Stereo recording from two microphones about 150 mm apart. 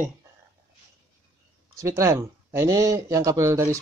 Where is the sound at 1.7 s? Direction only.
20° right (ahead or behind).